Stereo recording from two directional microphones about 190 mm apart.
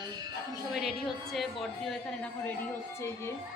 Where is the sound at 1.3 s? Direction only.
Centre (ahead or behind).